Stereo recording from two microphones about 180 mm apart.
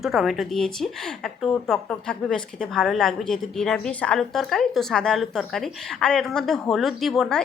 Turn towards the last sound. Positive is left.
turn(degrees=5)  # may be behind; listen again after turning